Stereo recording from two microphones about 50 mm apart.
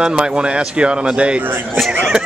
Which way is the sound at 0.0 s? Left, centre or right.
Centre.